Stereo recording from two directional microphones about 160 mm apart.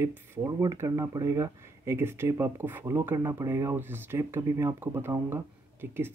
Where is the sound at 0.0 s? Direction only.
15° right (ahead or behind).